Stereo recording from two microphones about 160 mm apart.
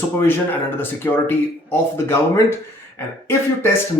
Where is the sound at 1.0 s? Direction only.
15° left (ahead or behind).